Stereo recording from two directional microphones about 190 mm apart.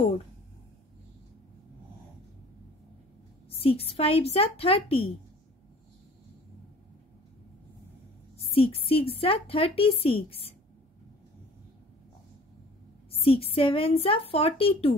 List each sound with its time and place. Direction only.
3.4 s speech: 30° left (ahead or behind)
8.4 s a woman's voice: 30° left (ahead or behind)
13.1 s a woman's voice: 30° left (ahead or behind)